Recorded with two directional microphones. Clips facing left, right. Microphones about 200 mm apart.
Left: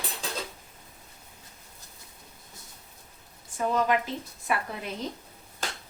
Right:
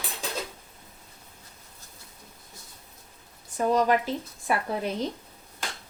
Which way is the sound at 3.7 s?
35° right (ahead or behind).